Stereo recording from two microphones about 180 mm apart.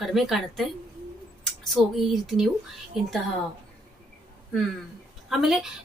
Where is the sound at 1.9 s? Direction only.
Centre (ahead or behind).